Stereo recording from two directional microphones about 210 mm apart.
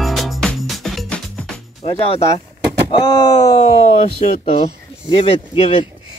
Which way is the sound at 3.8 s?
35° left (ahead or behind).